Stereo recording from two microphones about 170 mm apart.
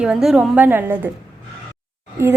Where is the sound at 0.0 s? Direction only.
5° right (ahead or behind).